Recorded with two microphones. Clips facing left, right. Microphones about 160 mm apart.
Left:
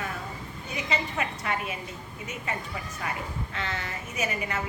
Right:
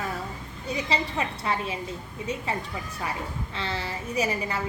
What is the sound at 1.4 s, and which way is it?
Speech, 30° right (ahead or behind).